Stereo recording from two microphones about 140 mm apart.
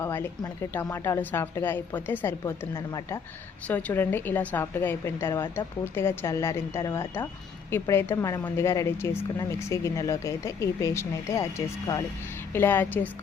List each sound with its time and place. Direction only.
0.0 s a woman's voice: 15° left (ahead or behind)